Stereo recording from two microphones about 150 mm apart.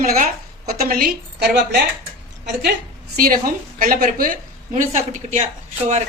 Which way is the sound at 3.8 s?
70° right (ahead or behind).